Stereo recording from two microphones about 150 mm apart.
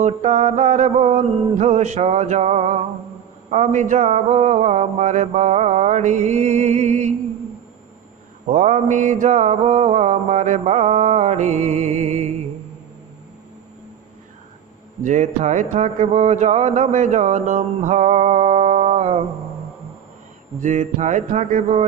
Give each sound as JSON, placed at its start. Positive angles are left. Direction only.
{"t": 0.0, "sound": "speech", "side_deg": -55}
{"t": 8.4, "sound": "speech", "side_deg": -60}
{"t": 15.0, "sound": "speech", "side_deg": -55}
{"t": 20.6, "sound": "music", "side_deg": -55}